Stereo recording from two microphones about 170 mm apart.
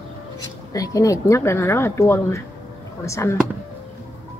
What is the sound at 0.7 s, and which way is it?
A woman's voice, 20° left (ahead or behind).